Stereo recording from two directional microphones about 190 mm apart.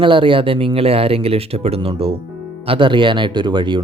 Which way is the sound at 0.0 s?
25° right (ahead or behind).